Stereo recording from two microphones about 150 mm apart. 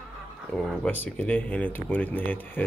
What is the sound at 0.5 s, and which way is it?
Speech, 10° left (ahead or behind).